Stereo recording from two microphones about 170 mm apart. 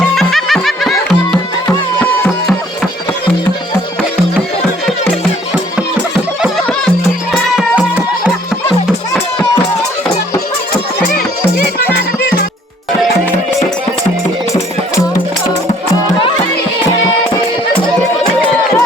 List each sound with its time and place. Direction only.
0.2 s music: centre (ahead or behind)
5.7 s music: 5° right (ahead or behind)
11.9 s music: 70° left (ahead or behind)
17.8 s music: 5° left (ahead or behind)